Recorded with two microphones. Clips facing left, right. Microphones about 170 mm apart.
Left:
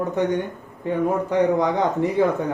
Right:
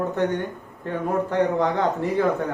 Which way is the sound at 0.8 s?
15° left (ahead or behind).